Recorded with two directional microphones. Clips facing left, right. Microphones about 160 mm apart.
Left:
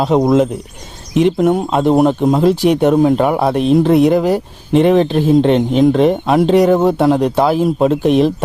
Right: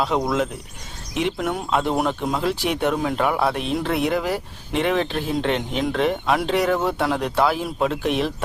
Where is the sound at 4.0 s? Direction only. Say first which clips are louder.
Left 10 dB; 40° left (ahead or behind).